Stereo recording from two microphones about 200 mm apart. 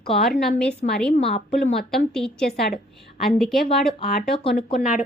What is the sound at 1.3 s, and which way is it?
Speech, 30° left (ahead or behind).